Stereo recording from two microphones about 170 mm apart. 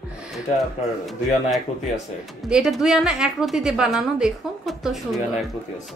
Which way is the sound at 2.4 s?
5° right (ahead or behind).